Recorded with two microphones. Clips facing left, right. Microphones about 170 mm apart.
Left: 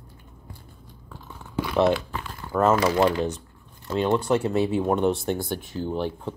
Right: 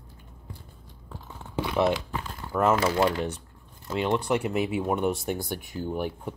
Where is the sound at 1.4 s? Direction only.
20° right (ahead or behind).